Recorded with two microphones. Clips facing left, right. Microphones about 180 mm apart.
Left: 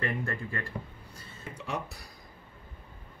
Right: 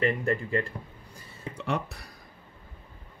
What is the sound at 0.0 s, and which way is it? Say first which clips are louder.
Speech: right 7 dB; 15° right (ahead or behind).